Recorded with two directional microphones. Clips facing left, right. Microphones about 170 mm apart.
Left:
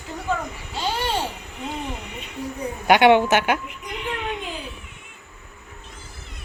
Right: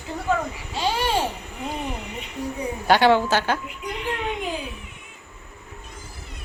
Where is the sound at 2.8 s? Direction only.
20° left (ahead or behind).